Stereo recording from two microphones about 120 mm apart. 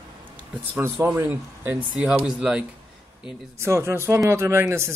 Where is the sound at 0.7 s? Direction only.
20° right (ahead or behind).